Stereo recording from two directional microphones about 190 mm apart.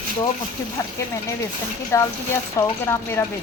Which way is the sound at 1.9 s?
15° left (ahead or behind).